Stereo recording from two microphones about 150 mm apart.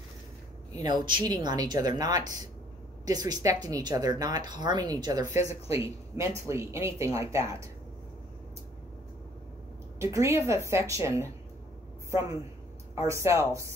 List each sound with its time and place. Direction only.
0.7 s speech: 30° right (ahead or behind)
5.5 s a woman's voice: 40° left (ahead or behind)
6.1 s speech: 20° right (ahead or behind)
9.9 s a woman's voice: 20° right (ahead or behind)